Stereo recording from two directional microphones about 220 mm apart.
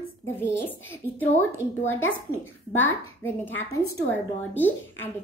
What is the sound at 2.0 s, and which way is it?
Speech, 65° left (ahead or behind).